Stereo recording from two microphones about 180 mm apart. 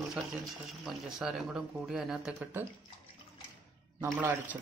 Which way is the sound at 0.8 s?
5° right (ahead or behind).